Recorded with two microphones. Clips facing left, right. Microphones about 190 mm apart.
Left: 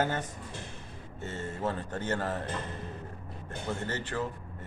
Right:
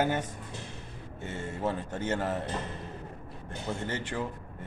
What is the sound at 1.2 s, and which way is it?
A man's voice, 10° right (ahead or behind).